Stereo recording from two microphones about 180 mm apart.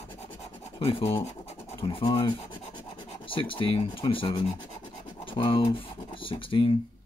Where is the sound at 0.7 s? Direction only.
30° left (ahead or behind).